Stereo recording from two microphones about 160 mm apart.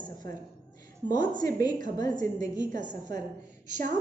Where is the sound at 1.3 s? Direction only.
25° left (ahead or behind).